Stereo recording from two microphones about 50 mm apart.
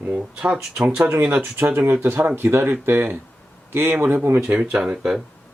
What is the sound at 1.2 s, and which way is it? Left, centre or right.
Speech, right.